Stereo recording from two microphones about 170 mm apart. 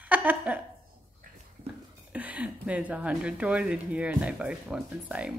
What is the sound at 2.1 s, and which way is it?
Speech, 10° right (ahead or behind).